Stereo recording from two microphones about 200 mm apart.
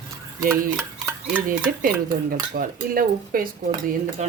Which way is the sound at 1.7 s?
45° right (ahead or behind).